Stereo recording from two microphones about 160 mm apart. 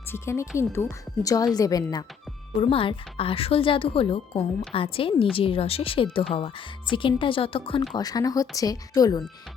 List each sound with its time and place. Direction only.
0.1 s a woman's voice: 15° left (ahead or behind)
2.6 s speech: 35° left (ahead or behind)
7.8 s speech: 25° left (ahead or behind)